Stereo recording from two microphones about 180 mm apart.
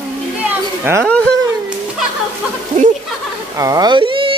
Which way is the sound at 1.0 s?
5° left (ahead or behind).